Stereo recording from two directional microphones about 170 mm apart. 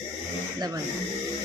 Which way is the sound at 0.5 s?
25° right (ahead or behind).